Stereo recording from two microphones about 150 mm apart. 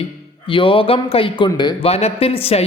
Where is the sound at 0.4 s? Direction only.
35° left (ahead or behind).